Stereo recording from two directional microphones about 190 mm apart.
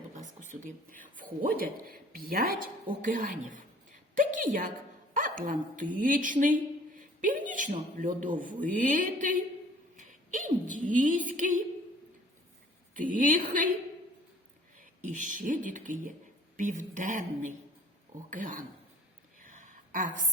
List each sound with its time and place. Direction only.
0.1 s speech: 40° right (ahead or behind)
12.9 s speech: 45° right (ahead or behind)
14.8 s speech: 45° right (ahead or behind)
19.4 s a sound: 45° right (ahead or behind)